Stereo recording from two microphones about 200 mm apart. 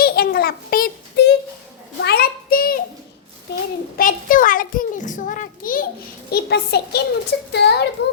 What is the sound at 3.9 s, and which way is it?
A child's voice, 40° left (ahead or behind).